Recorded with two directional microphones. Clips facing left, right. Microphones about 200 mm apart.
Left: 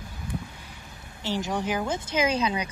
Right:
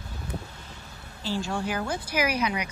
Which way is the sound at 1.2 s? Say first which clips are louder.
Left 1 dB; 20° left (ahead or behind).